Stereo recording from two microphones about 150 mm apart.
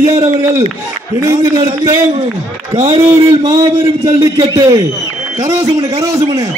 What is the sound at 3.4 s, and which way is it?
A man's voice, 25° right (ahead or behind).